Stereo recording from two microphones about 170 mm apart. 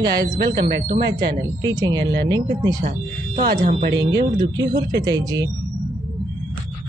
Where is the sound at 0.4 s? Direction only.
70° right (ahead or behind).